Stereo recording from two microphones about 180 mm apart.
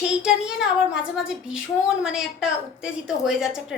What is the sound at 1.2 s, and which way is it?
Speech, 90° left.